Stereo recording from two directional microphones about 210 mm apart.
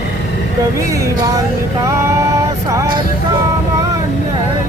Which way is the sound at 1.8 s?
15° right (ahead or behind).